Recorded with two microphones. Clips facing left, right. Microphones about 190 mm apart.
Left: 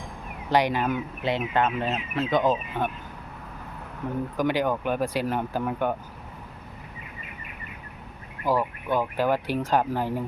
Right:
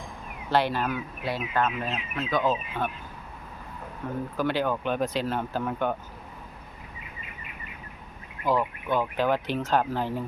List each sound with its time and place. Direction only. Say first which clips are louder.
0.5 s speech: left 2 dB; 15° left (ahead or behind)
4.4 s speech: left 2 dB; 15° left (ahead or behind)
8.4 s speech: left 1 dB; 10° left (ahead or behind)